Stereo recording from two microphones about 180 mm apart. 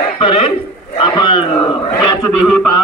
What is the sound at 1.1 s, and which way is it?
Speech, 25° left (ahead or behind).